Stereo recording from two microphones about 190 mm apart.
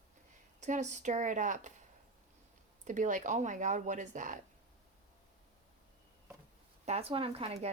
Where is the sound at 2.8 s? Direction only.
40° right (ahead or behind).